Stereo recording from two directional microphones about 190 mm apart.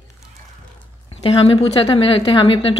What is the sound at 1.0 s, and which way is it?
A woman's voice, 30° left (ahead or behind).